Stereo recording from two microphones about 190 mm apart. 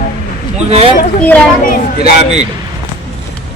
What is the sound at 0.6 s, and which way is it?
Speech, 35° right (ahead or behind).